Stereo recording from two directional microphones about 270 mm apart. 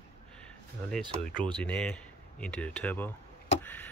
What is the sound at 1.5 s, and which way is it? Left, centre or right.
Speech, centre.